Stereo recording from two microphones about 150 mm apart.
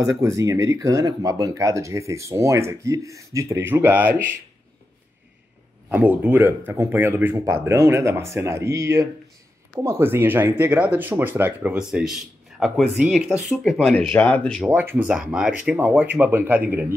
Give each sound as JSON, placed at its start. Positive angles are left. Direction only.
{"t": 0.2, "sound": "speech", "side_deg": -20}
{"t": 5.9, "sound": "speech", "side_deg": -10}
{"t": 14.7, "sound": "speech", "side_deg": -15}